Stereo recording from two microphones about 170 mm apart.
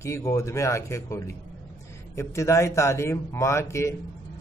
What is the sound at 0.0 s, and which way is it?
A man's voice, 15° left (ahead or behind).